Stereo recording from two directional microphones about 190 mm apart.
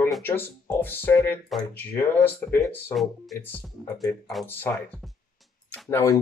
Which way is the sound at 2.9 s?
Centre (ahead or behind).